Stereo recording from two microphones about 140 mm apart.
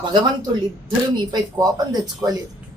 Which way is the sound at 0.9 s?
30° right (ahead or behind).